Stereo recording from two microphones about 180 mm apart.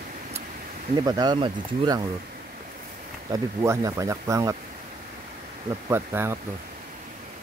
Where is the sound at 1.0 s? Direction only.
25° right (ahead or behind).